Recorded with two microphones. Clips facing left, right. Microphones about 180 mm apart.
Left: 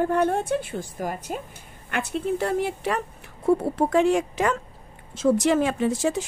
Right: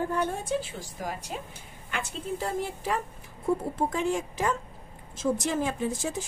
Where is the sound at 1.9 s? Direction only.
60° left (ahead or behind).